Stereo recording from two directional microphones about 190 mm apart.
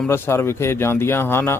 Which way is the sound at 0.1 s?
15° left (ahead or behind).